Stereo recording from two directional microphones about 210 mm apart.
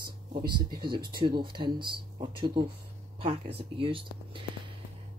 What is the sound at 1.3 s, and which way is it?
Speech, 20° right (ahead or behind).